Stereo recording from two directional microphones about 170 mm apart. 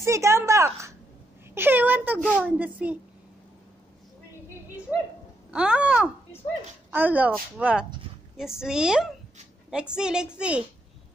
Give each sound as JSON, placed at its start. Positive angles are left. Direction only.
{"t": 0.0, "sound": "speech", "side_deg": -15}
{"t": 4.9, "sound": "a sound", "side_deg": -5}
{"t": 5.5, "sound": "a woman's voice", "side_deg": -5}